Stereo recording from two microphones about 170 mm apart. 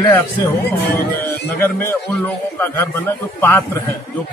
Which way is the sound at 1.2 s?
15° left (ahead or behind).